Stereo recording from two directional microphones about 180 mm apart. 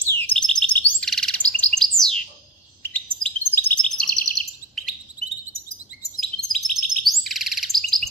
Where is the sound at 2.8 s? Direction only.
10° left (ahead or behind).